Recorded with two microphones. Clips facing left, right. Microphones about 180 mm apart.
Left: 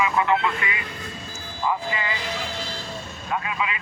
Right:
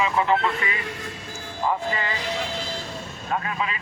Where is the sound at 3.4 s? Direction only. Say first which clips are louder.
Even; 40° right (ahead or behind).